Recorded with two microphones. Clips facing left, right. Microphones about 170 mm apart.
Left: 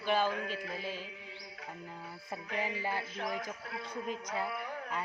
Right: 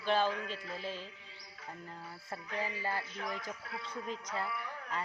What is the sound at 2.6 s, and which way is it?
Speech, 20° left (ahead or behind).